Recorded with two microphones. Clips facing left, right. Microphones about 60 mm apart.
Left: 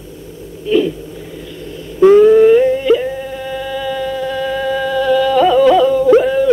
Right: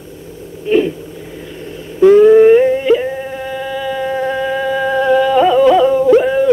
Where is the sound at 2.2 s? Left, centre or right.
Right.